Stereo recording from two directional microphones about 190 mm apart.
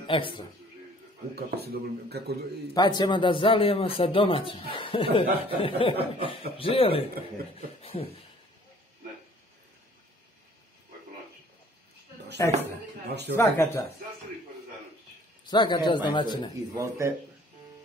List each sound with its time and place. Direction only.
0.0 s a man's voice: 25° left (ahead or behind)
1.3 s speech: 55° right (ahead or behind)
2.7 s speech: 25° left (ahead or behind)
12.4 s speech: 15° left (ahead or behind)
15.4 s speech: 25° left (ahead or behind)
16.5 s speech: 15° right (ahead or behind)